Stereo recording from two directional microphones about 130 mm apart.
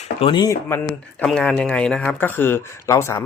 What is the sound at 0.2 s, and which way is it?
Speech, 40° left (ahead or behind).